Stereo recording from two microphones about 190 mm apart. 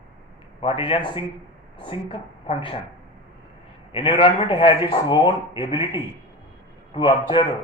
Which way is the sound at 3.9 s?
30° left (ahead or behind).